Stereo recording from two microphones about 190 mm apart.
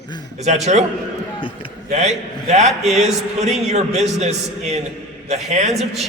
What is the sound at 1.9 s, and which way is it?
A man's voice, 35° right (ahead or behind).